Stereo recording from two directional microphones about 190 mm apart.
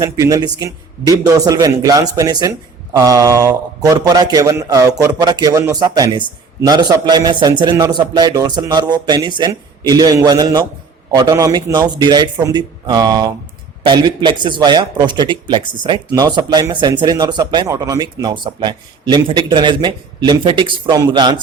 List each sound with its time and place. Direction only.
0.0 s a man's voice: 15° right (ahead or behind)